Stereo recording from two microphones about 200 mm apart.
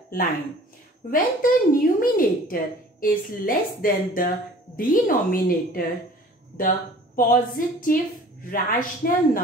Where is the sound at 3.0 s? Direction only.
45° left (ahead or behind).